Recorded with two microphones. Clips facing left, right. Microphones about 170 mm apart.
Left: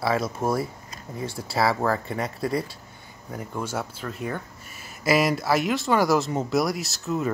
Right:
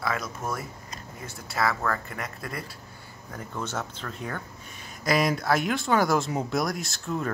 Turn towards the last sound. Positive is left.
turn(degrees=5)  # may be behind; listen again after turning